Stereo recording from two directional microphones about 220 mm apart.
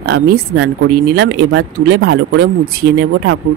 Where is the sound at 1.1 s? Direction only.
55° right (ahead or behind).